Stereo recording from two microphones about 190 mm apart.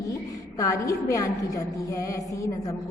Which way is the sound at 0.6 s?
15° left (ahead or behind).